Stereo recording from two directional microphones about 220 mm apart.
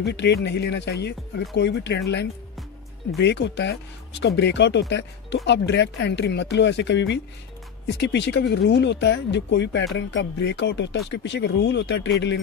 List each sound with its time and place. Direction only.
0.0 s speech: 50° left (ahead or behind)